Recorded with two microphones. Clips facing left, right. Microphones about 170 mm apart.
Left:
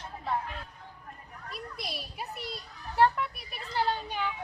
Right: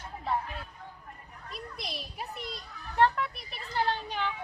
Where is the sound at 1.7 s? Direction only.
5° left (ahead or behind).